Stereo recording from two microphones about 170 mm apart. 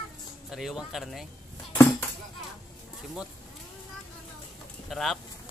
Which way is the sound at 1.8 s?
15° left (ahead or behind).